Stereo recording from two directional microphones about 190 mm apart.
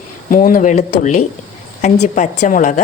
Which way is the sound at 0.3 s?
45° left (ahead or behind).